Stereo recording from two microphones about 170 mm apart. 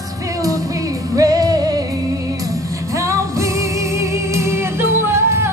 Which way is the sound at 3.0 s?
20° right (ahead or behind).